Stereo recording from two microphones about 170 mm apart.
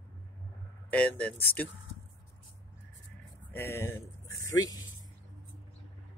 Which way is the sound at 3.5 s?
15° left (ahead or behind).